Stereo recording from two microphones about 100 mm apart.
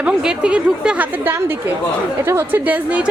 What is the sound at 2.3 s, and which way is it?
Speech, 25° right (ahead or behind).